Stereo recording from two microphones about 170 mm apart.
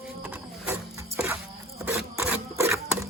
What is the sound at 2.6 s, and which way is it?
Filing, 15° right (ahead or behind).